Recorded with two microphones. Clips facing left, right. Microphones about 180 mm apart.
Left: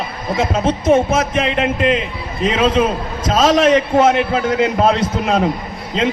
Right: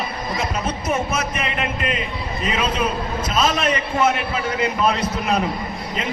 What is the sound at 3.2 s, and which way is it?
Music, 90° left.